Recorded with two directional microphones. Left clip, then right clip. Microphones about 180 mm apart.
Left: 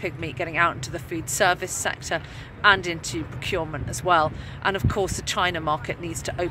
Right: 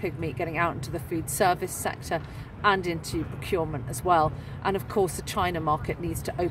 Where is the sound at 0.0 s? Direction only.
10° right (ahead or behind).